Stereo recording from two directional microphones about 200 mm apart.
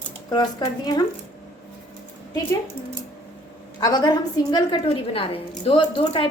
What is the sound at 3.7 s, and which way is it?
A woman's voice, 20° left (ahead or behind).